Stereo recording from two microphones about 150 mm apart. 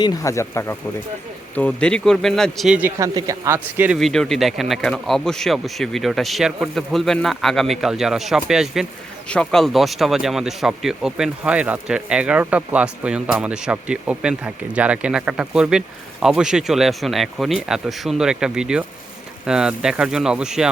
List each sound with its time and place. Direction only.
0.0 s speech: 25° left (ahead or behind)
1.5 s speech: 10° left (ahead or behind)
3.0 s speech: 20° right (ahead or behind)
3.9 s speech: centre (ahead or behind)